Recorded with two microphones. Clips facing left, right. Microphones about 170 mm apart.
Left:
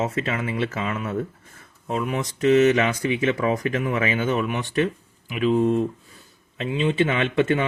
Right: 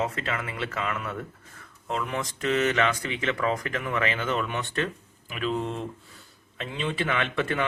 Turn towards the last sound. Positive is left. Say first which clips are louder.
# left 6 dB
turn(degrees=25)  # may be behind; listen again after turning